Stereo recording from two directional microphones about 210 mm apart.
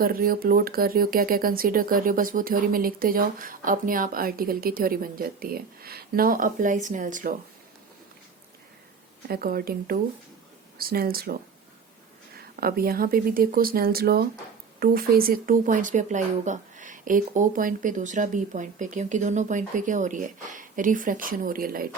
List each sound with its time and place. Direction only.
0.0 s speech: 45° right (ahead or behind)
9.2 s speech: 45° right (ahead or behind)
12.4 s speech: 45° right (ahead or behind)